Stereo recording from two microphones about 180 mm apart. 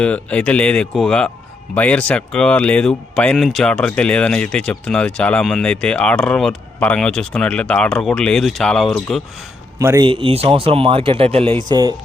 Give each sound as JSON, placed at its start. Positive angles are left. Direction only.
{"t": 0.0, "sound": "speech", "side_deg": 5}
{"t": 9.7, "sound": "speech", "side_deg": -20}
{"t": 10.1, "sound": "speech", "side_deg": -30}